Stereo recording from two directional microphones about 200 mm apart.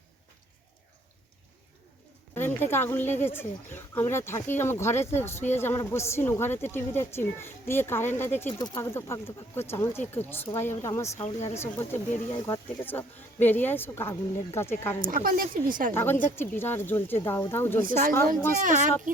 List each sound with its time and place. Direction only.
2.3 s speech: 10° left (ahead or behind)
8.4 s speech: 20° left (ahead or behind)
15.0 s a woman's voice: 45° right (ahead or behind)
16.0 s speech: 10° left (ahead or behind)
18.3 s speech: 40° right (ahead or behind)